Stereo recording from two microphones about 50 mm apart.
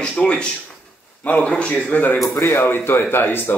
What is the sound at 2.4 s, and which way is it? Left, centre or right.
A man's voice, left.